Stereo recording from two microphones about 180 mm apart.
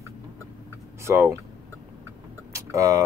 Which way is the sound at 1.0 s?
15° right (ahead or behind).